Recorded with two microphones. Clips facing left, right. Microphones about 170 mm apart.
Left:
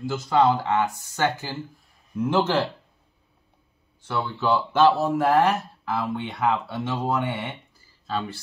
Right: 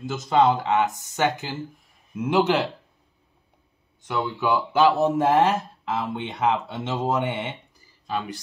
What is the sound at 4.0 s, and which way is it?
Speech, 15° right (ahead or behind).